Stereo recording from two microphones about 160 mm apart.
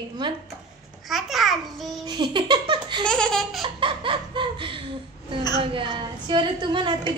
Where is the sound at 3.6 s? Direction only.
30° right (ahead or behind).